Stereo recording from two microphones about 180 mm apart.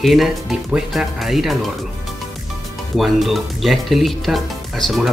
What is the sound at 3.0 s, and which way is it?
Speech, centre (ahead or behind).